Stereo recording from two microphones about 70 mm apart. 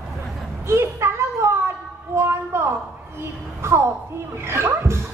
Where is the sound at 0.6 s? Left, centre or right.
Right.